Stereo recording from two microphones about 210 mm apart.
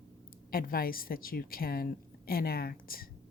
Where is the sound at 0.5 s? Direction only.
45° left (ahead or behind).